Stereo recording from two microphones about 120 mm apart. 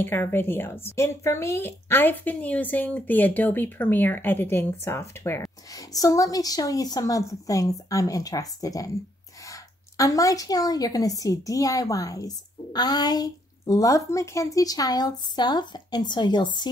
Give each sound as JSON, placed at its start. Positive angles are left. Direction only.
{"t": 0.0, "sound": "a woman's voice", "side_deg": 15}